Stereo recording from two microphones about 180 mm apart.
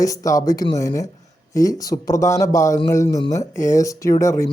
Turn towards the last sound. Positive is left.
turn(degrees=15)  # may be behind; listen again after turning